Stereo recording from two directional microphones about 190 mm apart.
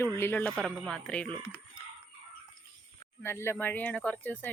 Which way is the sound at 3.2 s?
15° left (ahead or behind).